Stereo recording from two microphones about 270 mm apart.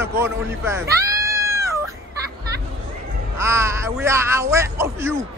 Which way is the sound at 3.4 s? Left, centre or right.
Centre.